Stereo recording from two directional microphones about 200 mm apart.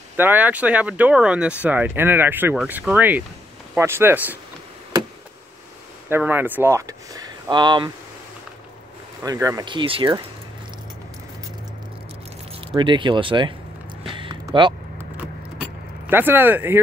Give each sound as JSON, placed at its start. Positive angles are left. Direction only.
{"t": 0.2, "sound": "speech", "side_deg": -10}
{"t": 6.0, "sound": "speech", "side_deg": -10}
{"t": 9.2, "sound": "speech", "side_deg": -15}
{"t": 12.5, "sound": "speech", "side_deg": -25}
{"t": 14.0, "sound": "a sound", "side_deg": -25}
{"t": 15.1, "sound": "keys jangling", "side_deg": -5}